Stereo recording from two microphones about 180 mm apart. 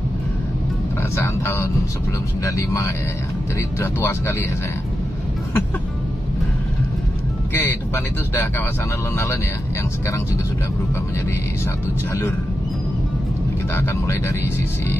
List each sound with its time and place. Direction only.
1.1 s speech: 15° left (ahead or behind)
7.5 s speech: 10° left (ahead or behind)